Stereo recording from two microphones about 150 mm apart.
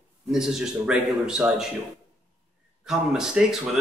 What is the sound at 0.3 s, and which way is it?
A man's voice, 5° right (ahead or behind).